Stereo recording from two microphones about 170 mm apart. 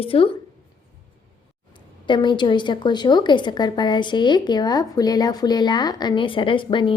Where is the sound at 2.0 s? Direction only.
25° left (ahead or behind).